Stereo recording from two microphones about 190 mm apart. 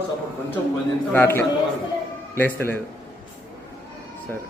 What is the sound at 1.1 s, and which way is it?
A man's voice, 10° left (ahead or behind).